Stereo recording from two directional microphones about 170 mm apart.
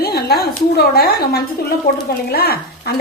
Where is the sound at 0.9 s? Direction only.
65° left (ahead or behind).